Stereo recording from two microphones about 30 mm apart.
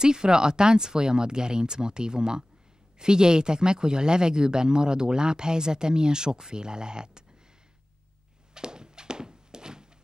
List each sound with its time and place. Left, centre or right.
0.0 s speech: right
8.5 s thunk: right